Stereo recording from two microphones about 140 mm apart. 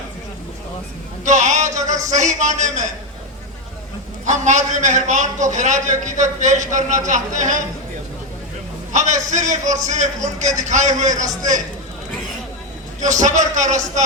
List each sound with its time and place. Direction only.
1.2 s a man's voice: 60° right (ahead or behind)
4.3 s a man's voice: 60° right (ahead or behind)
8.9 s a man's voice: 60° right (ahead or behind)
13.0 s a man's voice: 60° right (ahead or behind)